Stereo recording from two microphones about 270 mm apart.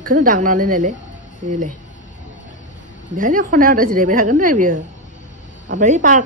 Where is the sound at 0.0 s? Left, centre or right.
Right.